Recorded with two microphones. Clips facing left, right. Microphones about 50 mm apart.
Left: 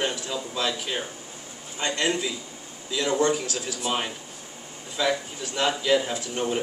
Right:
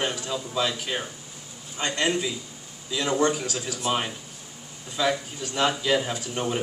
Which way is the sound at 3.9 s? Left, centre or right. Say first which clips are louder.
Right 2 dB; centre.